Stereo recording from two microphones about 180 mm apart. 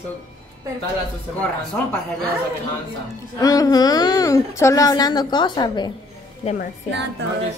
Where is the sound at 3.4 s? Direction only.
20° left (ahead or behind).